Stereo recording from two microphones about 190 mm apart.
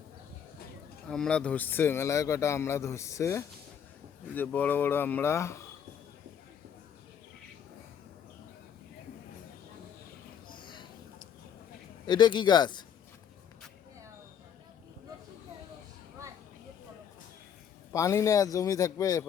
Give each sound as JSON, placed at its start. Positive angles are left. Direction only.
{"t": 1.0, "sound": "speech", "side_deg": 5}
{"t": 10.5, "sound": "a sound", "side_deg": 25}
{"t": 12.0, "sound": "speech", "side_deg": 20}
{"t": 17.9, "sound": "speech", "side_deg": 15}